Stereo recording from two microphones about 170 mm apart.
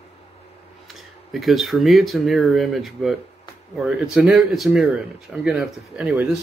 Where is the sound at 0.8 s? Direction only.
Centre (ahead or behind).